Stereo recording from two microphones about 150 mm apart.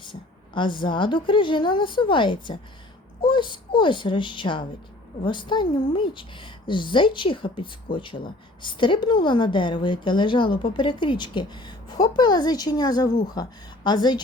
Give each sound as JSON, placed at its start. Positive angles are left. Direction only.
{"t": 0.0, "sound": "a woman's voice", "side_deg": 35}